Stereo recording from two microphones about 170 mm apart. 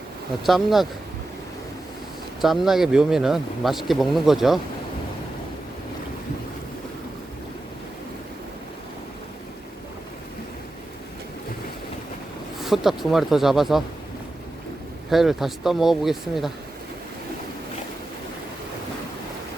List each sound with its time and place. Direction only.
0.4 s speech: centre (ahead or behind)
2.4 s speech: centre (ahead or behind)
12.6 s speech: centre (ahead or behind)
15.1 s speech: centre (ahead or behind)